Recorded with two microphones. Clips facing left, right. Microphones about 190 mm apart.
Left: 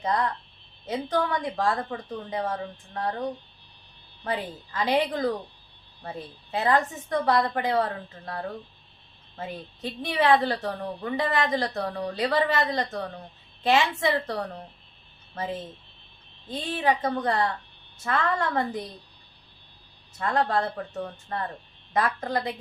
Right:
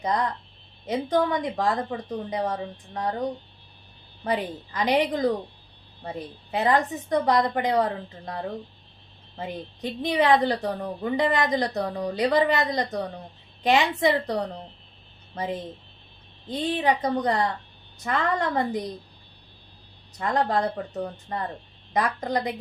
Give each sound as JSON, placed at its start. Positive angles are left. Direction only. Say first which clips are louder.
{"t": 0.0, "sound": "a woman's voice", "louder": "right 1 dB", "side_deg": -15}
{"t": 16.5, "sound": "a woman's voice", "louder": "right 2 dB", "side_deg": -15}
{"t": 20.1, "sound": "a woman's voice", "louder": "right 1 dB", "side_deg": -15}